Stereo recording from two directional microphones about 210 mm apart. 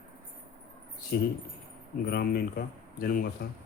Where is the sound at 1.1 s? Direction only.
50° left (ahead or behind).